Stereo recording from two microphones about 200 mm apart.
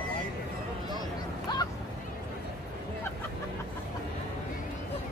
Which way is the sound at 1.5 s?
20° left (ahead or behind).